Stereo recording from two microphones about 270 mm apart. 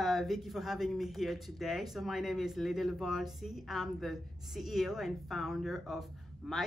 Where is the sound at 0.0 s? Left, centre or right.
Centre.